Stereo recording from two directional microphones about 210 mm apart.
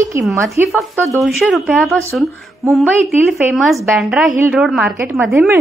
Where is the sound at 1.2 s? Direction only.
Centre (ahead or behind).